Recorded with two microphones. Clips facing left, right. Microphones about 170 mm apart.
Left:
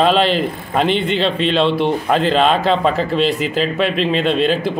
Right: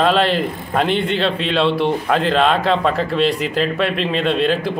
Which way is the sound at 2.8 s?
25° left (ahead or behind).